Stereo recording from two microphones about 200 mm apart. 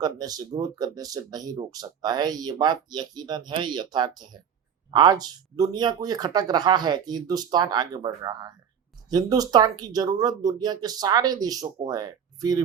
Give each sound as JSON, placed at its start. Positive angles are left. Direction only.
{"t": 0.0, "sound": "speech", "side_deg": -20}